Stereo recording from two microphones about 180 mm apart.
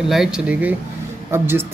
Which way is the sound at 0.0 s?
Centre (ahead or behind).